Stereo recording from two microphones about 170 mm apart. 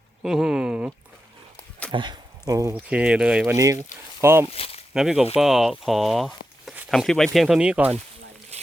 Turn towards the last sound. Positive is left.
turn(degrees=-5)  # may be behind; listen again after turning